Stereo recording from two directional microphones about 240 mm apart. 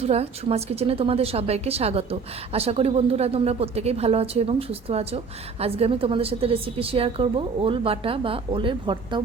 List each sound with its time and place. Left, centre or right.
0.0 s a woman's voice: right